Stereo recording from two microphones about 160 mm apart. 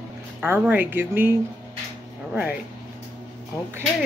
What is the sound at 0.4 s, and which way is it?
Speech, 10° right (ahead or behind).